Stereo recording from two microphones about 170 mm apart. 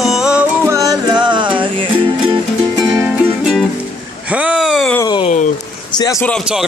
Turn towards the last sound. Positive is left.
turn(degrees=-5)  # may be behind; listen again after turning